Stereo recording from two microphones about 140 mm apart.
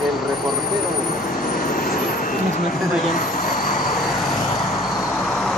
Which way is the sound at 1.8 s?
90° left.